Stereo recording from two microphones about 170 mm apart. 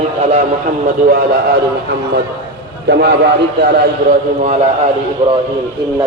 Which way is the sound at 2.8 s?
80° right.